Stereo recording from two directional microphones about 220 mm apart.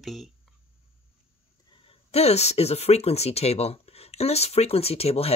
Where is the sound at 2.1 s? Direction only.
30° left (ahead or behind).